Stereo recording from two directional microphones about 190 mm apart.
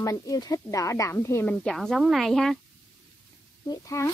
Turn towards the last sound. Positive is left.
turn(degrees=15)  # may be behind; listen again after turning